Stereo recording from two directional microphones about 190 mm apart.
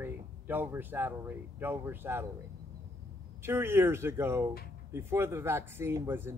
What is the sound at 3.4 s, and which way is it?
Speech, 10° right (ahead or behind).